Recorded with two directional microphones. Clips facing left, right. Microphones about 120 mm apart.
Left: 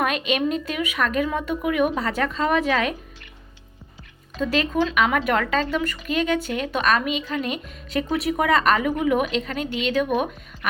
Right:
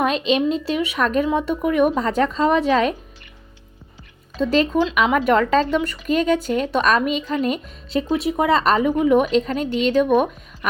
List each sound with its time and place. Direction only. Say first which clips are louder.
0.0 s a woman's voice: right 4 dB; 30° right (ahead or behind)
4.5 s a woman's voice: right 3 dB; 40° right (ahead or behind)
8.0 s a woman's voice: right 3 dB; 25° right (ahead or behind); by 10.7 s 40° right (ahead or behind)